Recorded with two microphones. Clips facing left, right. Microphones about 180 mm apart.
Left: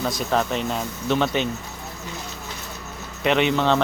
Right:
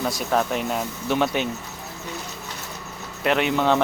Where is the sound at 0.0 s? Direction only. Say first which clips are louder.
Even; 10° right (ahead or behind).